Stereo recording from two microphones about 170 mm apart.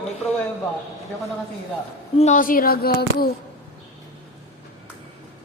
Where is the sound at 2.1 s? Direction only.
45° left (ahead or behind); by 3.2 s 60° left (ahead or behind).